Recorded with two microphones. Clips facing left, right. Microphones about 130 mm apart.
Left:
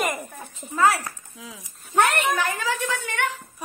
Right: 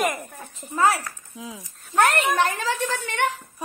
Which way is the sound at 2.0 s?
30° right (ahead or behind).